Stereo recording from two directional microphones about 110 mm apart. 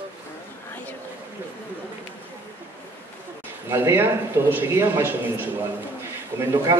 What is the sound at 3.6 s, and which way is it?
A man's voice, 20° right (ahead or behind).